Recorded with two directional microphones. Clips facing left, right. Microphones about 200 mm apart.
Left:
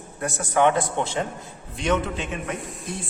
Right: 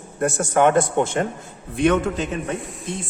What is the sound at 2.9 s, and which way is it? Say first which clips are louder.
Speech: right 4 dB; 20° right (ahead or behind).